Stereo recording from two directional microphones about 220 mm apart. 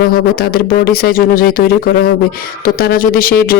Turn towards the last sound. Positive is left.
turn(degrees=40)  # may be behind; listen again after turning